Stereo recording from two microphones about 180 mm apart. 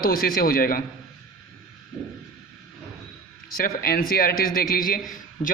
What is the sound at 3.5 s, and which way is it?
A man's voice, 55° left (ahead or behind).